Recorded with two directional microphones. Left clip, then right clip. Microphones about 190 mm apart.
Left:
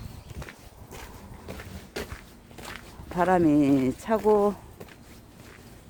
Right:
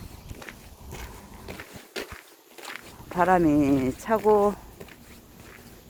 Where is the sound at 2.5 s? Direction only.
55° right (ahead or behind).